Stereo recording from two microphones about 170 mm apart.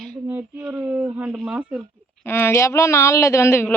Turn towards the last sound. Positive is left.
turn(degrees=15)  # may be behind; listen again after turning